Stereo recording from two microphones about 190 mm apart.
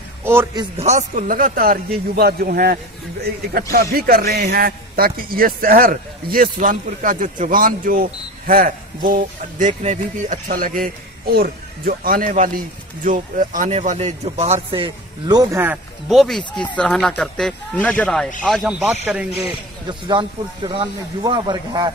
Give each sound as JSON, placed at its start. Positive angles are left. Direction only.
{"t": 0.2, "sound": "a sound", "side_deg": -10}
{"t": 0.6, "sound": "a man's voice", "side_deg": -35}
{"t": 16.1, "sound": "speech", "side_deg": 0}
{"t": 19.9, "sound": "speech", "side_deg": -25}